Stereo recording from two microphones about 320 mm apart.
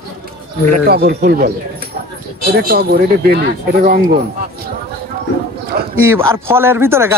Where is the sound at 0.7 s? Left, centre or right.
Right.